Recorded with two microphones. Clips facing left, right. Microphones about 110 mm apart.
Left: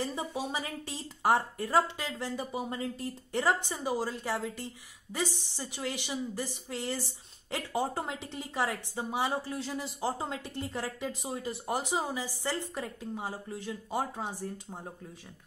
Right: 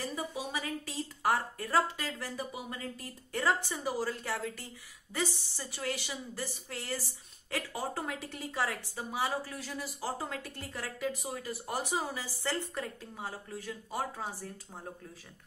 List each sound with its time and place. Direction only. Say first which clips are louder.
0.0 s speech: left 3 dB; 30° left (ahead or behind)